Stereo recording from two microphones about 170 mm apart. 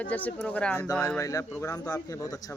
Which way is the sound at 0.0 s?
10° left (ahead or behind).